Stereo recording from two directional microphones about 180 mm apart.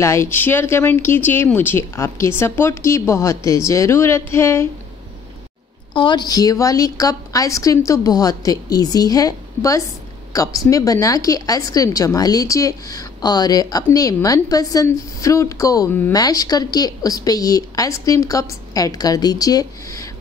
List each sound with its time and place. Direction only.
0.0 s speech: 15° left (ahead or behind)
5.9 s a woman's voice: 25° left (ahead or behind)